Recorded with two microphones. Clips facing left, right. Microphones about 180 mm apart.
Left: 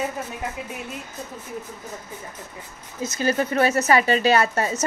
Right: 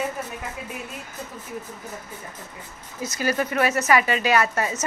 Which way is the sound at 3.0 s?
25° left (ahead or behind).